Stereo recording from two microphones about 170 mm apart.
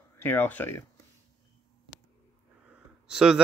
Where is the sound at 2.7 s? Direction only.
5° right (ahead or behind).